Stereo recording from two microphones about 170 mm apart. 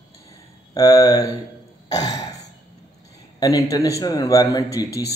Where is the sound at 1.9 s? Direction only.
20° left (ahead or behind).